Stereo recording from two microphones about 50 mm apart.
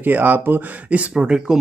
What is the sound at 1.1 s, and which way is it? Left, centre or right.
Speech, centre.